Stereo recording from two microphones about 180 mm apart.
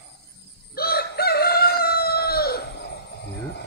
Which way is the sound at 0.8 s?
60° left (ahead or behind).